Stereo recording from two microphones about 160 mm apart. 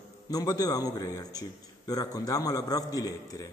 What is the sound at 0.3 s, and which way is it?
A man's voice, 25° left (ahead or behind).